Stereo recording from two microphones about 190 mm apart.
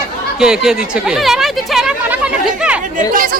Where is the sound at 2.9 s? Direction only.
45° right (ahead or behind).